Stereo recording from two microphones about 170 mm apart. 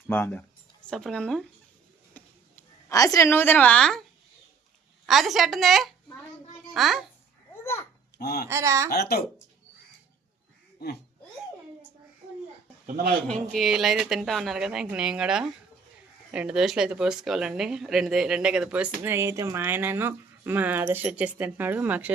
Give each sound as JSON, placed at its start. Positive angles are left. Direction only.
{"t": 0.1, "sound": "speech", "side_deg": 10}
{"t": 2.1, "sound": "a sound", "side_deg": 15}
{"t": 5.0, "sound": "speech", "side_deg": 0}
{"t": 7.6, "sound": "babbling", "side_deg": 15}
{"t": 8.2, "sound": "a woman's voice", "side_deg": 70}
{"t": 8.4, "sound": "speech", "side_deg": -15}
{"t": 8.9, "sound": "a woman's voice", "side_deg": 70}
{"t": 10.8, "sound": "a woman's voice", "side_deg": 70}
{"t": 12.8, "sound": "a sound", "side_deg": -50}
{"t": 13.2, "sound": "speech", "side_deg": 0}